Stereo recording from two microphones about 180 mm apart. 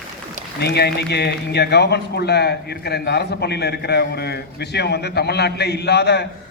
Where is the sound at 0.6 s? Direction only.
65° left (ahead or behind).